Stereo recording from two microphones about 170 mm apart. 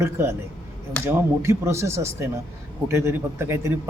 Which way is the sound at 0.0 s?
15° right (ahead or behind).